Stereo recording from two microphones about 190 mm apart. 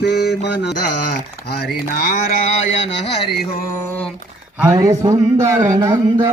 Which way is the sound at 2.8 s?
65° left (ahead or behind).